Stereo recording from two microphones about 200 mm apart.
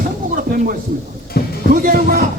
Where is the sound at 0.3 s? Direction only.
45° right (ahead or behind).